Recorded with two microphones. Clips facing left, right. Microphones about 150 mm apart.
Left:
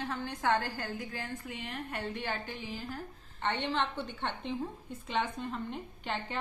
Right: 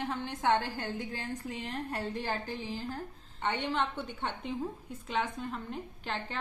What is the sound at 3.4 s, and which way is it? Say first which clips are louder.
A woman's voice: even; 10° right (ahead or behind).